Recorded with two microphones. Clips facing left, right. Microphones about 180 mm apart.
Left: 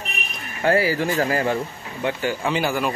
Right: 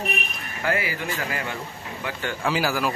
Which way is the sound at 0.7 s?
35° left (ahead or behind).